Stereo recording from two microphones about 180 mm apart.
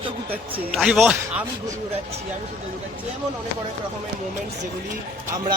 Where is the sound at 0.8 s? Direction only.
5° right (ahead or behind).